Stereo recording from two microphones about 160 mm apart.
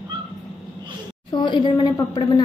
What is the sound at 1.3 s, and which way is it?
A woman's voice, 30° left (ahead or behind).